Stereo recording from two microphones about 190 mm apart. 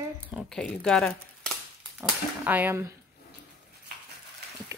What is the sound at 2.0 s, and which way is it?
Speech, 5° right (ahead or behind).